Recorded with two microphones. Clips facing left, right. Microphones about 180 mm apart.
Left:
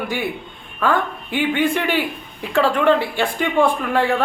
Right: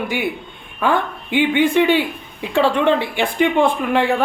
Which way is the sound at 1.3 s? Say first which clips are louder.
Right 4 dB; 20° right (ahead or behind).